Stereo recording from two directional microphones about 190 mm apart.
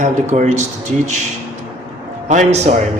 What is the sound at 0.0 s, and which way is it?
Speech, 40° right (ahead or behind).